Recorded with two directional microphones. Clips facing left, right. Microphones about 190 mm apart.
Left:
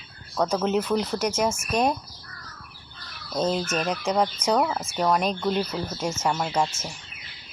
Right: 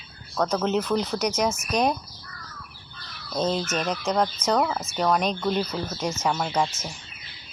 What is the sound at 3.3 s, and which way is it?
Speech, 5° left (ahead or behind).